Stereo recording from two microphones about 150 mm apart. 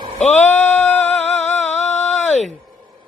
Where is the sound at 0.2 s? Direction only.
50° left (ahead or behind).